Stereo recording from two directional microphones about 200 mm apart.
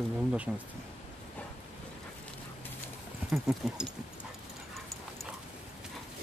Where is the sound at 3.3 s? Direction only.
Centre (ahead or behind).